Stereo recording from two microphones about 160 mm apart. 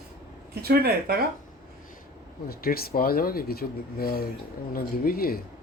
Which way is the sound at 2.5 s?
70° left (ahead or behind).